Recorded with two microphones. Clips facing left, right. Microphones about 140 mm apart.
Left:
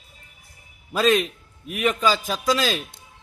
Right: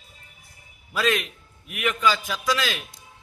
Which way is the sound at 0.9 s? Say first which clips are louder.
Left 5 dB; 35° left (ahead or behind).